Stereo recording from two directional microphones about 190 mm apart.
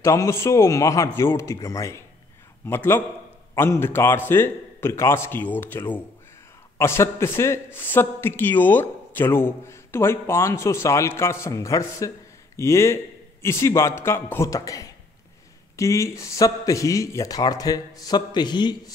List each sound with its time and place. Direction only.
0.0 s a man's voice: 15° left (ahead or behind)